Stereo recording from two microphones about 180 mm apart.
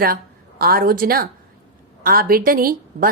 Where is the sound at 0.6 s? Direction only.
55° right (ahead or behind).